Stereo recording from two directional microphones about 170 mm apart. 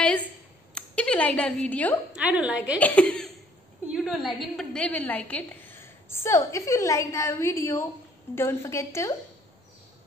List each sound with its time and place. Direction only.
0.7 s a woman's voice: 5° left (ahead or behind)
2.1 s a woman's voice: 5° right (ahead or behind)
2.8 s a woman's voice: 10° left (ahead or behind)